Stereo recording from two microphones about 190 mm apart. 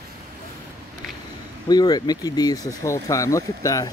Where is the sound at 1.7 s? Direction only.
20° left (ahead or behind).